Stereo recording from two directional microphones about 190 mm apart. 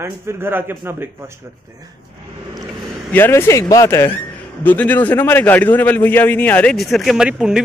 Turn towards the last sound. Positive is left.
turn(degrees=-5)  # may be behind; listen again after turning